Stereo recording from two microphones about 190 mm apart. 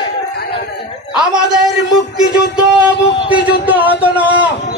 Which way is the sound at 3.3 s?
10° right (ahead or behind).